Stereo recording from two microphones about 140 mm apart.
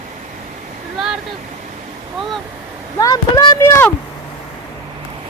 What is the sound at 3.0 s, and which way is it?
Speech, 25° left (ahead or behind).